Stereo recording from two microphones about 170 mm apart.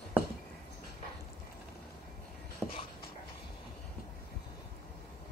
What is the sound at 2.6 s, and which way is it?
Writing, 5° right (ahead or behind).